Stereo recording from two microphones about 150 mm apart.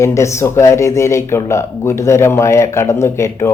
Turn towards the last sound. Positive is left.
turn(degrees=20)  # may be behind; listen again after turning